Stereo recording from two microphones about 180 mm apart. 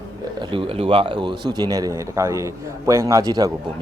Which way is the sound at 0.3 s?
25° right (ahead or behind).